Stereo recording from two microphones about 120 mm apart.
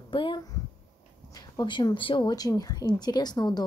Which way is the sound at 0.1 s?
45° left (ahead or behind).